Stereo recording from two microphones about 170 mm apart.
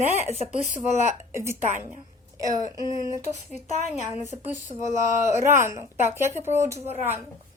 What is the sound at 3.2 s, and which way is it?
Speech, 45° left (ahead or behind).